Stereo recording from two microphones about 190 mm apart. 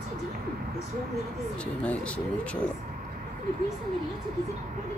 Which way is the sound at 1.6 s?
5° left (ahead or behind).